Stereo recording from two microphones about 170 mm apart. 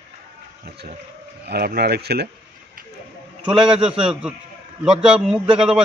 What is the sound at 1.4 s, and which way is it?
Speech, 70° right (ahead or behind).